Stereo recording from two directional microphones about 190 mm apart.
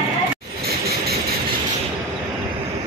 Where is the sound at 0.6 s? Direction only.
55° right (ahead or behind).